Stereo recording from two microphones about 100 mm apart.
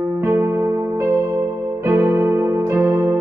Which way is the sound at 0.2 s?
30° right (ahead or behind).